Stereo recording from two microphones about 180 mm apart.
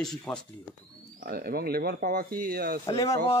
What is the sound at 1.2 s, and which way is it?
Speech, 55° right (ahead or behind).